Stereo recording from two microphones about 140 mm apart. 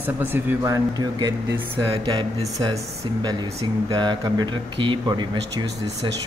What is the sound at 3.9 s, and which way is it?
Speech, 30° right (ahead or behind).